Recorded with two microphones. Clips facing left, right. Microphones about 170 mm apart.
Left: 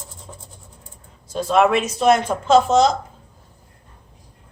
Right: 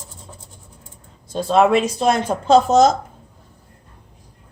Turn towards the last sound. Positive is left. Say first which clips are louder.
# right 2 dB
turn(degrees=-40)  # may be behind; listen again after turning